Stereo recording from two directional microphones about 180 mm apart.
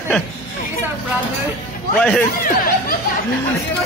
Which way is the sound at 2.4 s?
55° left (ahead or behind).